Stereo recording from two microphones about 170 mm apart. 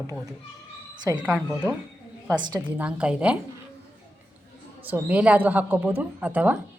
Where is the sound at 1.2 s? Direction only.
10° right (ahead or behind).